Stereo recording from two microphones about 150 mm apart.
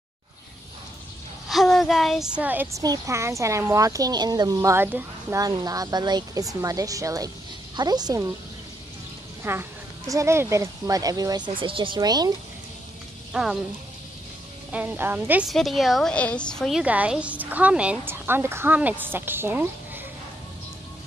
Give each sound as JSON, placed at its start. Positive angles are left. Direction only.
{"t": 1.5, "sound": "a woman's voice", "side_deg": 0}
{"t": 5.4, "sound": "a woman's voice", "side_deg": -25}
{"t": 9.4, "sound": "a woman's voice", "side_deg": -15}
{"t": 13.3, "sound": "speech", "side_deg": -5}
{"t": 14.7, "sound": "a woman's voice", "side_deg": -10}
{"t": 15.5, "sound": "a woman's voice", "side_deg": 0}
{"t": 16.8, "sound": "a woman's voice", "side_deg": -10}